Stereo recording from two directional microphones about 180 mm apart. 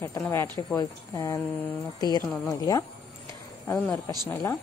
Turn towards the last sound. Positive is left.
turn(degrees=15)  # may be behind; listen again after turning